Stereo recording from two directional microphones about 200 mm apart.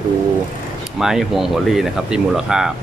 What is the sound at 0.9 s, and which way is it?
Speech, centre (ahead or behind).